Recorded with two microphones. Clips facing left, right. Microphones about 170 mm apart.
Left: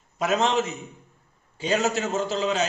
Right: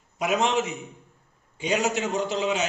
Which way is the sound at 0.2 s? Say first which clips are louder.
Left 1 dB; 15° right (ahead or behind).